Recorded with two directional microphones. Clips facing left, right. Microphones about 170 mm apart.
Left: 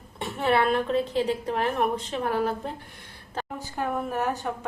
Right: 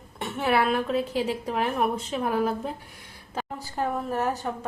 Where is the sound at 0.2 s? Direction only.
Centre (ahead or behind).